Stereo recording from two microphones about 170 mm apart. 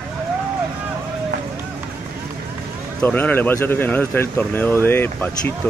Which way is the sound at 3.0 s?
10° left (ahead or behind).